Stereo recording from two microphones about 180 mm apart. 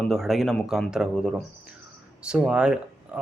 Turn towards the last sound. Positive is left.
turn(degrees=-5)  # may be behind; listen again after turning